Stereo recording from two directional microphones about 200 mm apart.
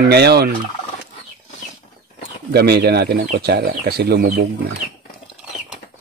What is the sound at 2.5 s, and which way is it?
Speech, 55° right (ahead or behind).